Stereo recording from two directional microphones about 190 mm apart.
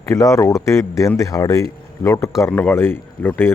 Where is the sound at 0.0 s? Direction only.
15° left (ahead or behind).